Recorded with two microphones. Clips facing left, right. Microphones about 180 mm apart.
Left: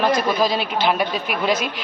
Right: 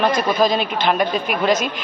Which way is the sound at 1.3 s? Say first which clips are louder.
Right 3 dB; 45° right (ahead or behind).